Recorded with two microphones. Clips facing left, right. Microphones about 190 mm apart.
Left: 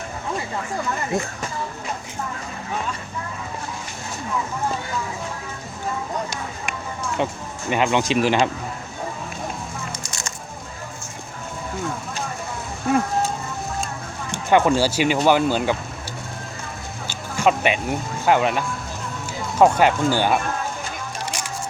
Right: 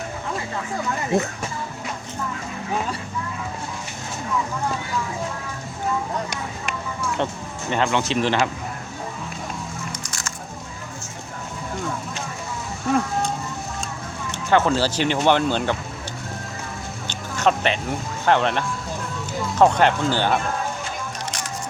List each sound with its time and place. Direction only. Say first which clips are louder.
7.2 s speech: left 1 dB; 5° left (ahead or behind)
14.3 s speech: left 2 dB; 15° left (ahead or behind)
17.1 s music: left 1 dB; 10° left (ahead or behind)
18.3 s speech: left 1 dB; 5° left (ahead or behind)